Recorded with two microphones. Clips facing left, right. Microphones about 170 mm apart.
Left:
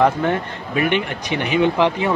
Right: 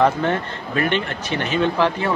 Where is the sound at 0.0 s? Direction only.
10° left (ahead or behind).